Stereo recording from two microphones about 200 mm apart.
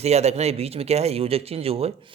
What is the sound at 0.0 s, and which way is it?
Speech, 30° right (ahead or behind).